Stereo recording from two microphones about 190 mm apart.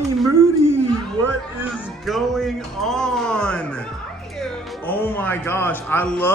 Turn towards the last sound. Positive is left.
turn(degrees=10)  # may be behind; listen again after turning